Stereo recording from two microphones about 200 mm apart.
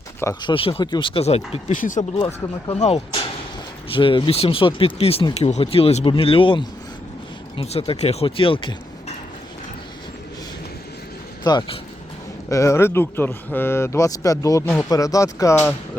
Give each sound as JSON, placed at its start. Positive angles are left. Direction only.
{"t": 0.2, "sound": "speech", "side_deg": 15}
{"t": 0.5, "sound": "speech", "side_deg": 25}
{"t": 2.1, "sound": "speech", "side_deg": 25}
{"t": 11.4, "sound": "speech", "side_deg": 20}